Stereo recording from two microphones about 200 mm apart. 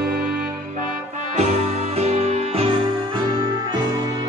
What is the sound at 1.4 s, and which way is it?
Music, 35° right (ahead or behind).